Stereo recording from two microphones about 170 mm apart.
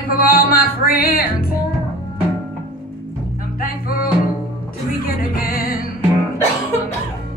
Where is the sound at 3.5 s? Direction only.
60° left (ahead or behind).